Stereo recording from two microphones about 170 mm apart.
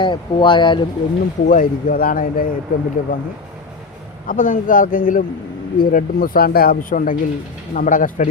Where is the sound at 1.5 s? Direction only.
55° left (ahead or behind).